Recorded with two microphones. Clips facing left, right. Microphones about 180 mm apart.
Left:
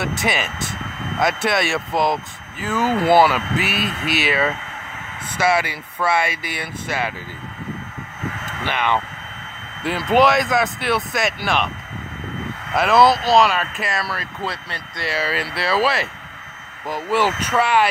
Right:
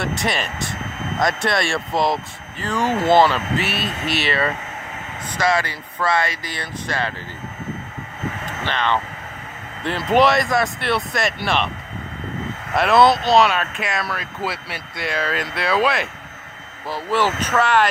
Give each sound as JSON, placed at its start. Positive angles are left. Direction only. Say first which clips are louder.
{"t": 0.0, "sound": "speech", "louder": "even", "side_deg": 0}
{"t": 8.6, "sound": "speech", "louder": "left 1 dB", "side_deg": 10}
{"t": 12.7, "sound": "speech", "louder": "even", "side_deg": 0}
{"t": 16.8, "sound": "speech", "louder": "left 1 dB", "side_deg": 15}